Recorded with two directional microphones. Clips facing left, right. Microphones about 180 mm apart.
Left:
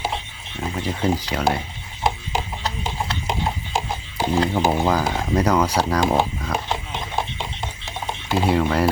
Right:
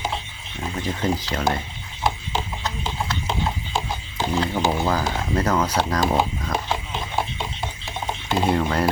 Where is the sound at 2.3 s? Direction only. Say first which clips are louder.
Left 1 dB; 35° left (ahead or behind).